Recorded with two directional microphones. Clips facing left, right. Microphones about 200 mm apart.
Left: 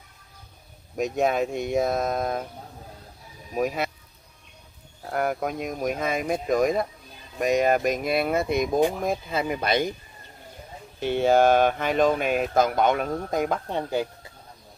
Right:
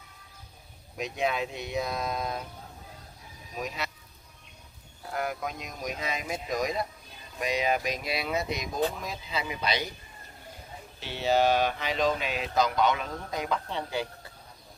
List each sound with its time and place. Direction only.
0.9 s speech: 45° left (ahead or behind)
3.5 s speech: 55° left (ahead or behind)
5.1 s speech: 50° left (ahead or behind)
11.0 s speech: 50° left (ahead or behind)